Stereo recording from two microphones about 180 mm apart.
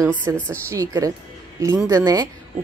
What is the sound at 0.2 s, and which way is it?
A woman's voice, 15° right (ahead or behind).